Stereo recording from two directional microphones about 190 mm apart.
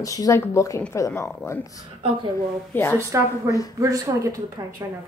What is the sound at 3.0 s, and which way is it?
Speech, 15° right (ahead or behind).